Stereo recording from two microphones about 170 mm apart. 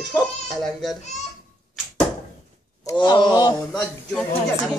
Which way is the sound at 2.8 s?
25° left (ahead or behind).